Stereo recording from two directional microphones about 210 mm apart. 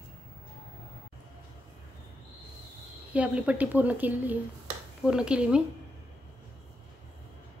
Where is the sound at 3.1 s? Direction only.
5° right (ahead or behind).